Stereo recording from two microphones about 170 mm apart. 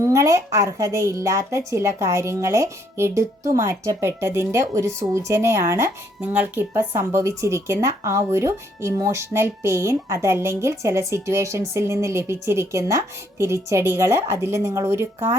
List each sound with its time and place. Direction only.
0.0 s speech: 20° right (ahead or behind)